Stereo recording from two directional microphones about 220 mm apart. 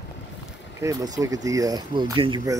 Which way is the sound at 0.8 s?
15° right (ahead or behind).